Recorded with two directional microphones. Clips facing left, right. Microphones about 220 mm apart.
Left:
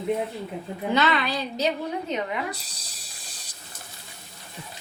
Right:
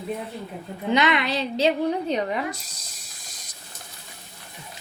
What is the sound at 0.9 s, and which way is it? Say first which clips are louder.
A woman's voice: right 2 dB; 20° right (ahead or behind).